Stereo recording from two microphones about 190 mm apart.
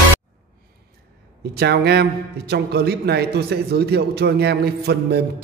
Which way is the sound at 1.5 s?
60° right (ahead or behind).